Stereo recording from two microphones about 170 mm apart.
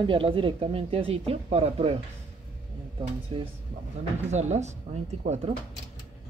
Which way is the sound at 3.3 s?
30° right (ahead or behind).